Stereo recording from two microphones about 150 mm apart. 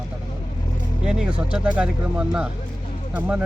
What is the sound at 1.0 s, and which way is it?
Speech, 5° right (ahead or behind).